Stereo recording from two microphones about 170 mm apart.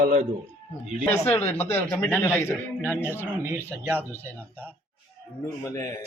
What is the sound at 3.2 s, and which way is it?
Speech, 15° right (ahead or behind).